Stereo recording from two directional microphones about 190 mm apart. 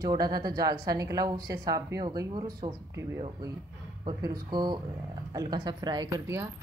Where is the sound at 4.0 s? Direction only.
20° right (ahead or behind).